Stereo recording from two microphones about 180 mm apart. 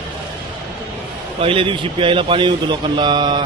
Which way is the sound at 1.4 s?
30° right (ahead or behind).